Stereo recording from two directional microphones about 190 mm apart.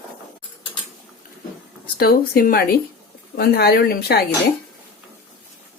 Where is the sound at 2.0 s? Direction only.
50° left (ahead or behind).